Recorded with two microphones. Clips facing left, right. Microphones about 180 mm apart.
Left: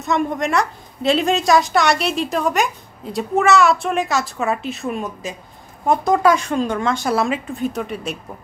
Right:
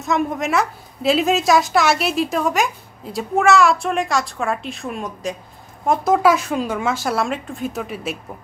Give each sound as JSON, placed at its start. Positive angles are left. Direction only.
{"t": 0.0, "sound": "a woman's voice", "side_deg": 0}